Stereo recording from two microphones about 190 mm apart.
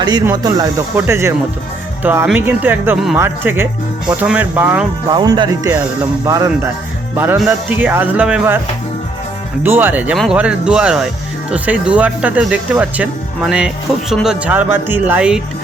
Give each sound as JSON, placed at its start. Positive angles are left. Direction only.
{"t": 0.3, "sound": "speech", "side_deg": -20}
{"t": 5.1, "sound": "speech", "side_deg": -20}
{"t": 7.2, "sound": "speech", "side_deg": -5}
{"t": 9.6, "sound": "speech", "side_deg": -10}